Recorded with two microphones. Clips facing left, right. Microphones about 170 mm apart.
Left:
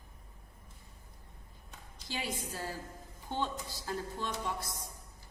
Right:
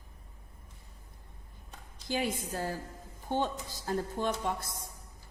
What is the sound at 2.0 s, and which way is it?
A woman's voice, 50° right (ahead or behind).